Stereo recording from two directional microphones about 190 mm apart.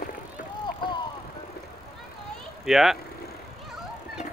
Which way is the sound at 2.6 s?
Centre (ahead or behind).